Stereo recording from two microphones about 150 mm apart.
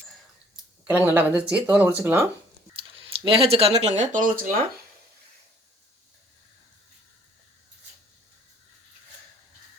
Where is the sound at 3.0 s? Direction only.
40° right (ahead or behind); by 4.4 s 65° right (ahead or behind).